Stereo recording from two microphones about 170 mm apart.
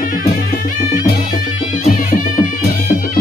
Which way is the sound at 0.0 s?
55° left (ahead or behind).